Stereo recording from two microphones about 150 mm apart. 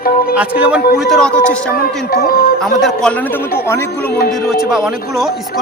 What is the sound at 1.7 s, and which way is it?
Speech, 80° left.